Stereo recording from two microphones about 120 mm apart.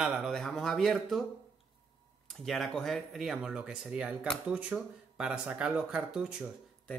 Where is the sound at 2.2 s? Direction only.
5° left (ahead or behind).